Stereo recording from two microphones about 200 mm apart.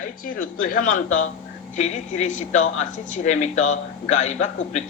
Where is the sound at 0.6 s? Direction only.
45° left (ahead or behind).